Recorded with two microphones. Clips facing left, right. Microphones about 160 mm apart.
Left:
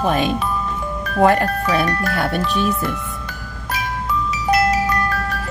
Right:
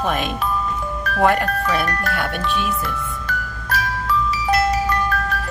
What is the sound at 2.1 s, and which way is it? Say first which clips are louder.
Speech: left 4 dB; 35° left (ahead or behind).